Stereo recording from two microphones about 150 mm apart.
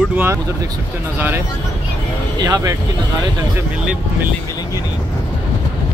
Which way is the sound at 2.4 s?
25° right (ahead or behind).